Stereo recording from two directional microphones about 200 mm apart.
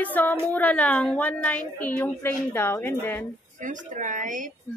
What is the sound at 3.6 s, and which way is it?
Speech, 40° right (ahead or behind).